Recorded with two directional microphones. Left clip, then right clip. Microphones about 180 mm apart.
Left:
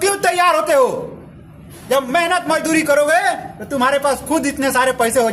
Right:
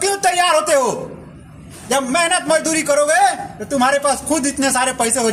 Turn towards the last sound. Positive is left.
turn(degrees=15)  # may be behind; listen again after turning